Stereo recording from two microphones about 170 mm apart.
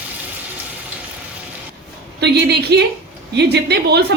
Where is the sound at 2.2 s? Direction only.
75° right (ahead or behind).